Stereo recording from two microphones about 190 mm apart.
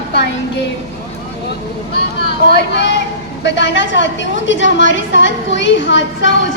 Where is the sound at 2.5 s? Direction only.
65° left (ahead or behind).